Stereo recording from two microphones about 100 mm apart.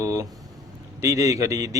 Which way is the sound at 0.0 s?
35° right (ahead or behind).